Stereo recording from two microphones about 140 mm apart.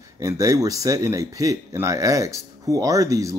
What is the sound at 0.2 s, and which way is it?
Speech, 25° right (ahead or behind).